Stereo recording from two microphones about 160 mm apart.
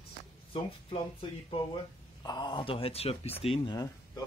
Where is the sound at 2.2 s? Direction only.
25° left (ahead or behind).